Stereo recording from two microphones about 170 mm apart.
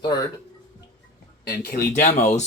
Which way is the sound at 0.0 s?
25° left (ahead or behind).